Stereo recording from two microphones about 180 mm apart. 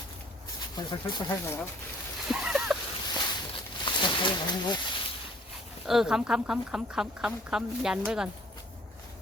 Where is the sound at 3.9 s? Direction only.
25° left (ahead or behind).